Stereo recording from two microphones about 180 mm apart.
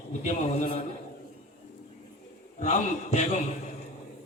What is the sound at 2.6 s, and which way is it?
Speech, 40° left (ahead or behind).